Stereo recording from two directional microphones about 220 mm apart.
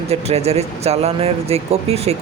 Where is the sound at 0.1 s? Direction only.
30° right (ahead or behind).